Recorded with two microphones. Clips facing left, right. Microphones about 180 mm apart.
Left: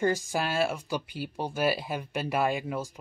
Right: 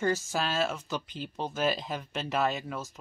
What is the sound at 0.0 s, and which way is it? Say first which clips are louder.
Speech: left 2 dB; 15° left (ahead or behind).